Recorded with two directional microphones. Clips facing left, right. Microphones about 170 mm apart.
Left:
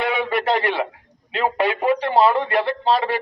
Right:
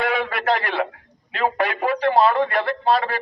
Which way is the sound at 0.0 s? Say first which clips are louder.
Left 1 dB; 25° left (ahead or behind).